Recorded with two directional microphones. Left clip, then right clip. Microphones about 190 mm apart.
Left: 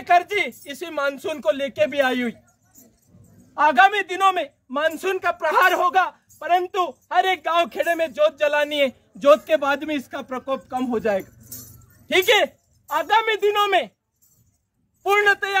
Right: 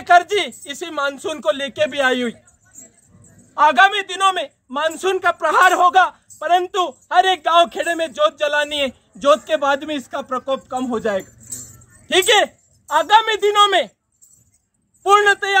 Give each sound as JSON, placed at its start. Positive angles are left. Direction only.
{"t": 0.0, "sound": "a man's voice", "side_deg": -5}
{"t": 3.5, "sound": "a man's voice", "side_deg": 0}
{"t": 15.0, "sound": "a man's voice", "side_deg": -5}